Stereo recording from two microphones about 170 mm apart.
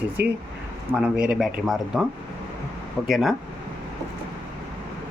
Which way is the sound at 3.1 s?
Centre (ahead or behind).